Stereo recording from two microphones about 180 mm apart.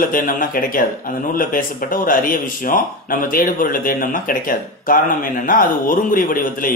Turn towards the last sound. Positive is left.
turn(degrees=50)  # may be behind; listen again after turning